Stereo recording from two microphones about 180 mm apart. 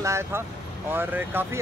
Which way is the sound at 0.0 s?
15° right (ahead or behind).